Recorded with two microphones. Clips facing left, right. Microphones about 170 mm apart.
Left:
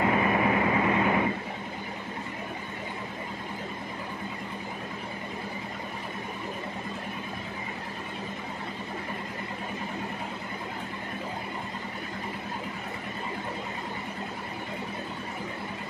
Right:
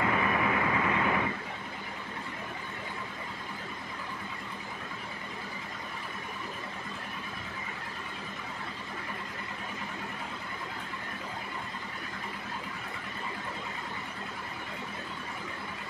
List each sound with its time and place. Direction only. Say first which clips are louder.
0.0 s vehicle: left 4 dB; 30° left (ahead or behind)